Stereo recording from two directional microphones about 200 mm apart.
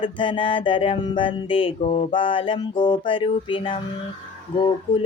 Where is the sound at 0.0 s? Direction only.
25° left (ahead or behind).